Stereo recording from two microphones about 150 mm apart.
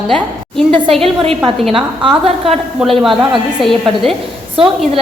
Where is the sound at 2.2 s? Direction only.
40° right (ahead or behind).